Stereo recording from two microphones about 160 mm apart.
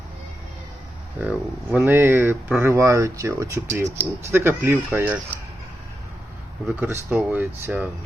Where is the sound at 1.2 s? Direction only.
5° right (ahead or behind).